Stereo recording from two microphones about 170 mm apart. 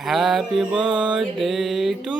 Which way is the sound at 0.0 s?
Centre (ahead or behind).